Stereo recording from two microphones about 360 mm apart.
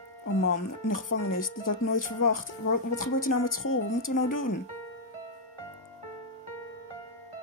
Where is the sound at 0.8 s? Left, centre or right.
Left.